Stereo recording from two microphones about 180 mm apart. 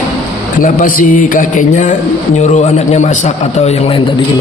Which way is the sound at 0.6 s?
50° left (ahead or behind).